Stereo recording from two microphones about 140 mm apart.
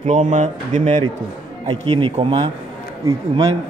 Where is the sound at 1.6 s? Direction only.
35° right (ahead or behind).